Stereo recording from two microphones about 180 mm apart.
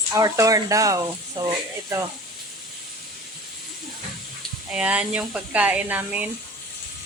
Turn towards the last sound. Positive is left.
turn(degrees=-5)  # may be behind; listen again after turning